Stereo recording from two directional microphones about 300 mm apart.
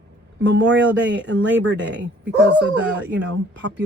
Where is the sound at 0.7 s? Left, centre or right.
Right.